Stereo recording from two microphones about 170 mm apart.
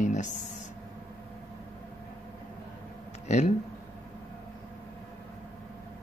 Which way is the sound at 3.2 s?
45° left (ahead or behind).